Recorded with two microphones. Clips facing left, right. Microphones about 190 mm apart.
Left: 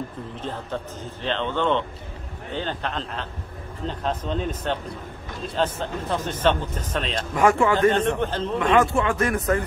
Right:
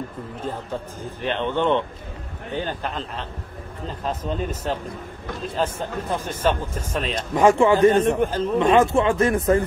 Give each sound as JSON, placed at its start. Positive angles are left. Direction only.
{"t": 1.2, "sound": "speech", "side_deg": -15}
{"t": 7.3, "sound": "speech", "side_deg": -25}
{"t": 7.7, "sound": "speech", "side_deg": -15}
{"t": 8.5, "sound": "speech", "side_deg": -25}